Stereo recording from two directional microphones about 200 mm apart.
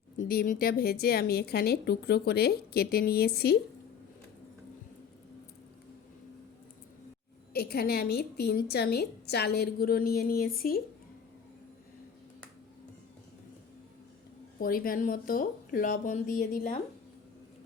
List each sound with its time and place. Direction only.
0.2 s a woman's voice: 45° left (ahead or behind)
7.5 s a woman's voice: 50° left (ahead or behind)
14.6 s a woman's voice: 45° left (ahead or behind)